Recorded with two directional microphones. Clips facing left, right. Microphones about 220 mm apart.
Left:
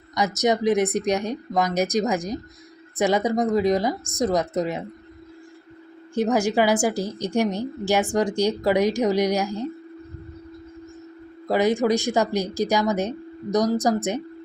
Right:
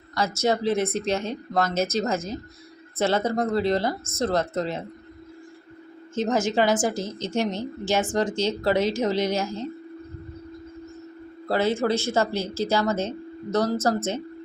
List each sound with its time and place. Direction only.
0.1 s speech: 20° left (ahead or behind)
6.3 s speech: 15° left (ahead or behind)
11.4 s speech: 15° left (ahead or behind)